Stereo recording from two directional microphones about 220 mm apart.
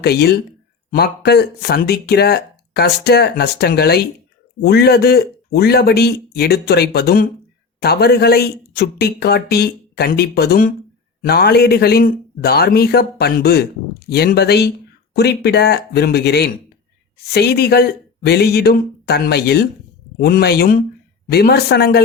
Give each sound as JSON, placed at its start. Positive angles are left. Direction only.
{"t": 0.0, "sound": "speech", "side_deg": 45}